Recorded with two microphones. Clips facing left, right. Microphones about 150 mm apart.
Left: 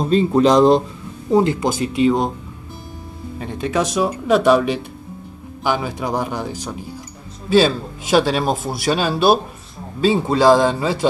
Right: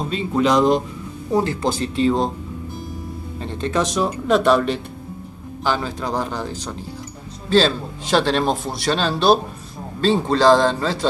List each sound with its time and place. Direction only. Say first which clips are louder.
0.1 s speech: left 5 dB; 35° left (ahead or behind)
1.3 s a man's voice: left 4 dB; 20° left (ahead or behind)
3.3 s a man's voice: left 1 dB; 10° left (ahead or behind)